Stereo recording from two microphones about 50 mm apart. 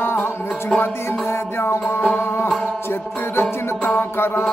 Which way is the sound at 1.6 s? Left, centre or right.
Left.